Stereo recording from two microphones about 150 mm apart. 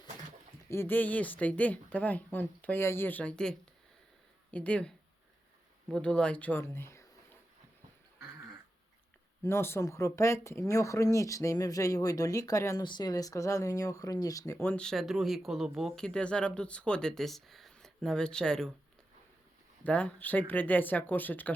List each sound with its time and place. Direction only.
0.7 s speech: 15° left (ahead or behind)
4.5 s speech: 10° left (ahead or behind)
9.4 s speech: 15° left (ahead or behind)
19.8 s speech: 10° left (ahead or behind)